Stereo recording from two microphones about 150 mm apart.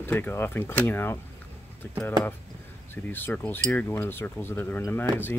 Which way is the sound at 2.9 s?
15° left (ahead or behind).